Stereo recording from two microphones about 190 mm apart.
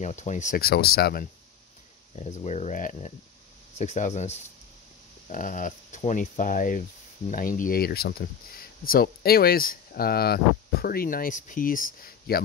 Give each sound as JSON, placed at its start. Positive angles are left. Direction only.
{"t": 0.0, "sound": "speech", "side_deg": 40}
{"t": 2.1, "sound": "speech", "side_deg": 35}